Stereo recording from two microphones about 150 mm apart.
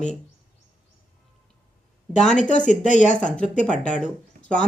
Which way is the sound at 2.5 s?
55° left (ahead or behind).